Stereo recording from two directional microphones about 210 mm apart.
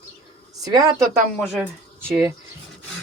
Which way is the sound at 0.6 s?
20° right (ahead or behind).